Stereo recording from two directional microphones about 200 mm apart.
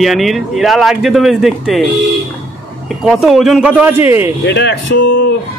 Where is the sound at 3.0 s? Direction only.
Centre (ahead or behind).